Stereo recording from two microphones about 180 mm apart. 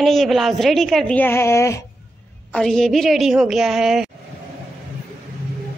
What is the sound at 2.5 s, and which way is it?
A woman's voice, 5° left (ahead or behind).